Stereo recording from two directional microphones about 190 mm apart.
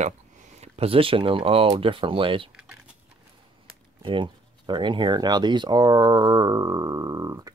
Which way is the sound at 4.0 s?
25° right (ahead or behind).